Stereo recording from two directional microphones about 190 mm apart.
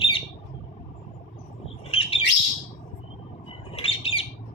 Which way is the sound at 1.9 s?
30° left (ahead or behind).